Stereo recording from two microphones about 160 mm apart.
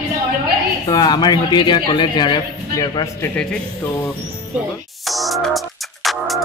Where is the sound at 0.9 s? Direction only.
25° left (ahead or behind).